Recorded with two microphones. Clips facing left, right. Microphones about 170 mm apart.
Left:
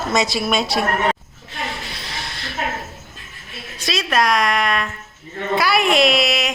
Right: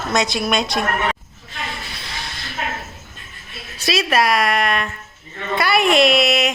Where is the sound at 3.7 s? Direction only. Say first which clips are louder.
Right 2 dB; 5° right (ahead or behind).